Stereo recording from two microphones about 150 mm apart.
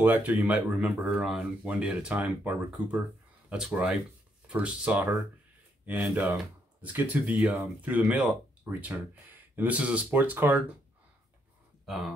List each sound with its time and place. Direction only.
0.0 s speech: 10° right (ahead or behind)
11.8 s speech: centre (ahead or behind)